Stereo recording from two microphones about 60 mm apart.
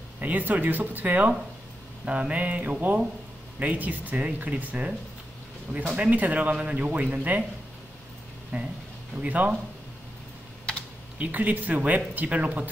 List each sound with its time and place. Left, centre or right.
0.2 s speech: right
5.9 s speech: right
8.5 s speech: centre
11.1 s speech: right